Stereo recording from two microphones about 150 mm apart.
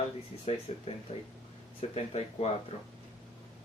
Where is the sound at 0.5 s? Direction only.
50° left (ahead or behind).